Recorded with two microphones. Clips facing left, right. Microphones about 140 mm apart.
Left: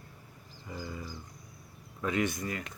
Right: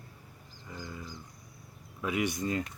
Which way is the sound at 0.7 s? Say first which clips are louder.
Left 2 dB; 5° left (ahead or behind).